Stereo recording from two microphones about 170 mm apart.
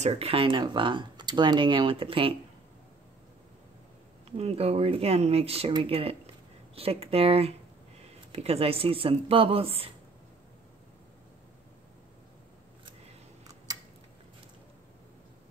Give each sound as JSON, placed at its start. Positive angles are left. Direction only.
{"t": 0.0, "sound": "speech", "side_deg": -35}
{"t": 4.4, "sound": "speech", "side_deg": -35}
{"t": 13.7, "sound": "a sound", "side_deg": -20}